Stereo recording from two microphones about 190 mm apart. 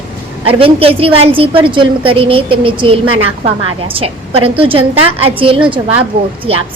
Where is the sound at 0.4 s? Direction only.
30° right (ahead or behind).